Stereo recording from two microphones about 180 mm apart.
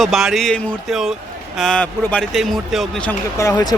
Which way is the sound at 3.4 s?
20° left (ahead or behind).